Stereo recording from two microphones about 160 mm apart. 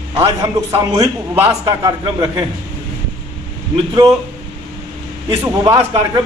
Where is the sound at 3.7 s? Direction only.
25° right (ahead or behind).